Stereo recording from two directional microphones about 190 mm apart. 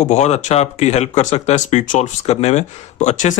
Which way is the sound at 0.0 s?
35° left (ahead or behind).